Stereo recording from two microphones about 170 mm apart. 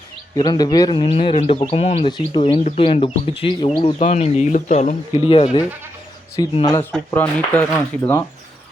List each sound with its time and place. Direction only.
0.3 s speech: 25° left (ahead or behind)
3.9 s speech: 40° left (ahead or behind); by 6.8 s 25° left (ahead or behind)
7.1 s speech: 10° left (ahead or behind)